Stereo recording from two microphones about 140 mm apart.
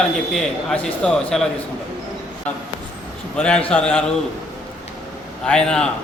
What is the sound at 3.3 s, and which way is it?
Speech, 5° left (ahead or behind).